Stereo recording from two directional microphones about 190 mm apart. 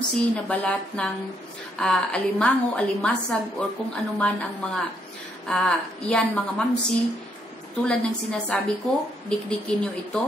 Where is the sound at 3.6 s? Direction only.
5° left (ahead or behind).